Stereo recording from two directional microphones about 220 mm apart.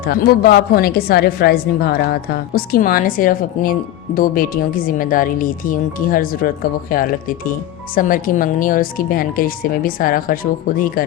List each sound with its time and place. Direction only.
0.0 s a woman's voice: 45° left (ahead or behind)